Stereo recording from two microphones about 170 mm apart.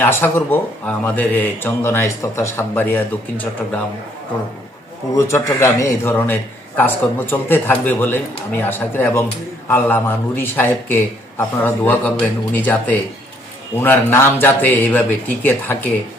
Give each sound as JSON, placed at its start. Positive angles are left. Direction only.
{"t": 0.0, "sound": "speech", "side_deg": 15}
{"t": 5.1, "sound": "speech", "side_deg": 20}